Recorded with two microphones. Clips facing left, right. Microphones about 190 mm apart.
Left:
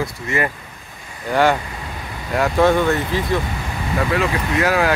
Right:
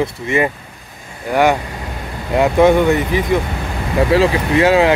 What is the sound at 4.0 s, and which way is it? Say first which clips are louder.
Speech: right 7 dB; 30° right (ahead or behind).